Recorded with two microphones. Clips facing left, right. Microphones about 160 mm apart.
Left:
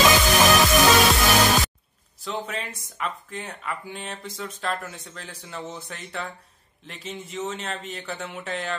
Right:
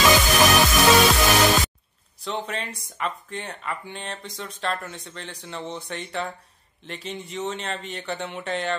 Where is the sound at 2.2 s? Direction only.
Centre (ahead or behind).